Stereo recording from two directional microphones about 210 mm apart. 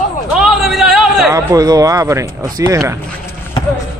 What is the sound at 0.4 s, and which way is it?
Music, centre (ahead or behind).